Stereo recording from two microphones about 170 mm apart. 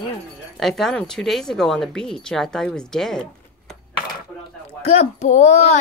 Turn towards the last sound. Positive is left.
turn(degrees=40)  # may be behind; listen again after turning